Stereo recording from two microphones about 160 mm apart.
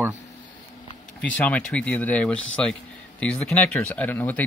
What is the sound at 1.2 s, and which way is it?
Speech, 10° left (ahead or behind).